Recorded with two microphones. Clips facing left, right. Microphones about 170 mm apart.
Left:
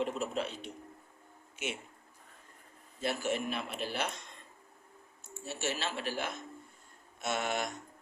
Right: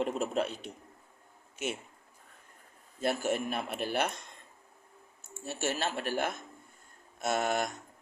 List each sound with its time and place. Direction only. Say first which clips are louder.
0.0 s a man's voice: right 3 dB; 50° right (ahead or behind)
3.0 s a man's voice: right 3 dB; 50° right (ahead or behind)
5.5 s a man's voice: right 3 dB; 50° right (ahead or behind)